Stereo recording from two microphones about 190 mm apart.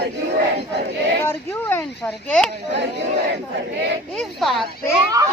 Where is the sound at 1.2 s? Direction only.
10° left (ahead or behind).